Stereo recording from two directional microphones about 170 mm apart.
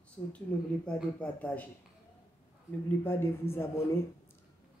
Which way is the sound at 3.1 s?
15° left (ahead or behind).